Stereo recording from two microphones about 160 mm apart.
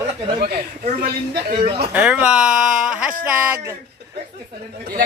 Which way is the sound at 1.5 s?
65° right (ahead or behind).